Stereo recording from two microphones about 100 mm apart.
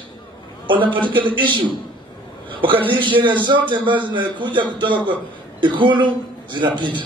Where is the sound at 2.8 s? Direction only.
55° right (ahead or behind).